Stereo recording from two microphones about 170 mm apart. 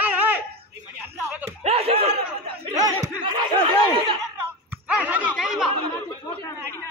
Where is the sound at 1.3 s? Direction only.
10° right (ahead or behind).